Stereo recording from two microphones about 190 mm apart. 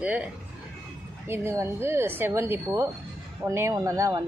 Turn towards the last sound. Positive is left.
turn(degrees=-15)  # may be behind; listen again after turning